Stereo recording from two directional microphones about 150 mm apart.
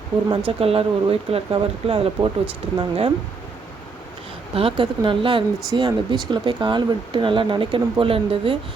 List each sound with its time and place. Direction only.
0.3 s speech: 40° right (ahead or behind)
4.5 s speech: 35° right (ahead or behind)